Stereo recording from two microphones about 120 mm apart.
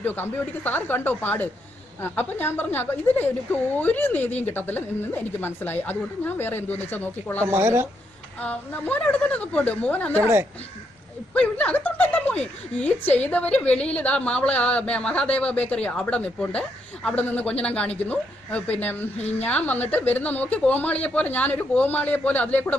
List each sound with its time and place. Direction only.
0.0 s a woman's voice: 15° left (ahead or behind)
7.4 s a woman's voice: 20° right (ahead or behind)
8.4 s a woman's voice: 10° left (ahead or behind)
10.1 s a woman's voice: 20° right (ahead or behind)
11.3 s a woman's voice: 10° left (ahead or behind)